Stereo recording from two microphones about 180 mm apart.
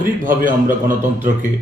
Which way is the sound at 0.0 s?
50° right (ahead or behind).